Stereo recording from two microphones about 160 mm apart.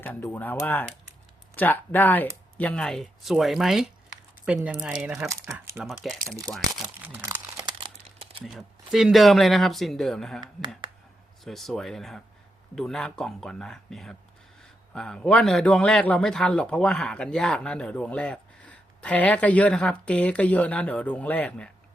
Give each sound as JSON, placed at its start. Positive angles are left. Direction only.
{"t": 0.0, "sound": "a man's voice", "side_deg": 10}
{"t": 5.2, "sound": "speech", "side_deg": -20}
{"t": 5.8, "sound": "speech", "side_deg": 0}
{"t": 6.2, "sound": "speech", "side_deg": -20}
{"t": 7.3, "sound": "crumpling", "side_deg": -25}
{"t": 8.4, "sound": "speech", "side_deg": 0}
{"t": 11.4, "sound": "a man's voice", "side_deg": 0}